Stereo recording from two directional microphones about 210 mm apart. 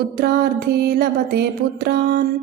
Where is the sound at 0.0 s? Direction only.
50° right (ahead or behind).